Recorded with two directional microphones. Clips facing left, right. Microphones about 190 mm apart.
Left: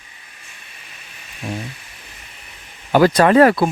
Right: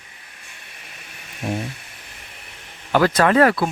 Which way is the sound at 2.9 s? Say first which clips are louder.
Left 4 dB; 15° left (ahead or behind).